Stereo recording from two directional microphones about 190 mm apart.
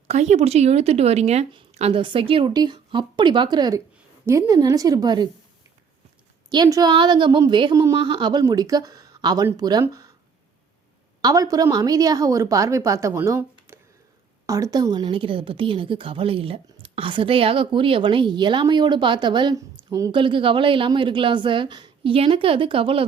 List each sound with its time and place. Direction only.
0.1 s a woman's voice: 35° right (ahead or behind)
6.5 s a woman's voice: 20° right (ahead or behind)
11.2 s a woman's voice: 20° right (ahead or behind)